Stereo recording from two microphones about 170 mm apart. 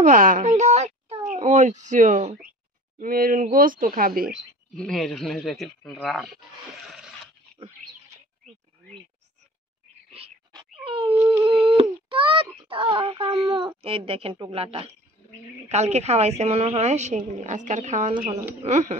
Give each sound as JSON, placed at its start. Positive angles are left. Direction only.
{"t": 0.0, "sound": "a woman's voice", "side_deg": -50}
{"t": 3.0, "sound": "speech", "side_deg": -60}
{"t": 4.7, "sound": "speech", "side_deg": 0}
{"t": 10.5, "sound": "cat", "side_deg": -30}
{"t": 11.1, "sound": "dog", "side_deg": -10}
{"t": 11.7, "sound": "a woman's voice", "side_deg": -30}